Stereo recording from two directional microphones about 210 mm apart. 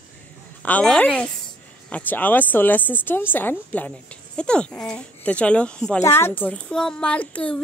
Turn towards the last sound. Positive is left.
turn(degrees=5)  # may be behind; listen again after turning